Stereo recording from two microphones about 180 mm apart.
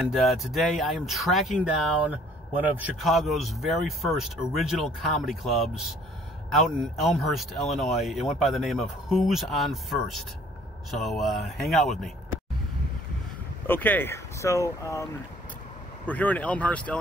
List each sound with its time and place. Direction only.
0.0 s speech: centre (ahead or behind)
13.7 s speech: 10° left (ahead or behind)
16.1 s speech: 10° left (ahead or behind)